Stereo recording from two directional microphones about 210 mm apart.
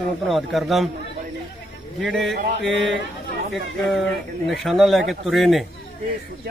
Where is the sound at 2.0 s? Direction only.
Centre (ahead or behind).